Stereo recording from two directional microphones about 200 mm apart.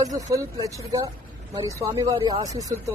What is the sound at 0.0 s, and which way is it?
Speech, 15° right (ahead or behind).